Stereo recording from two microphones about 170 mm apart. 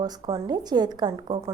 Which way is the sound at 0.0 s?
25° right (ahead or behind).